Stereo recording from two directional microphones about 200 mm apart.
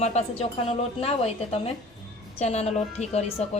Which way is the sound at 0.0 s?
35° left (ahead or behind).